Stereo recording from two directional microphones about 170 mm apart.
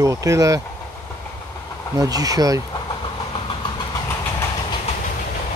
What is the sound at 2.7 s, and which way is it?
Vehicle, 30° left (ahead or behind).